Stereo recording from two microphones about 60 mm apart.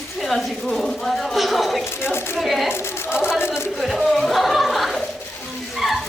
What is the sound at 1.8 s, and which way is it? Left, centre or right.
Speech, left.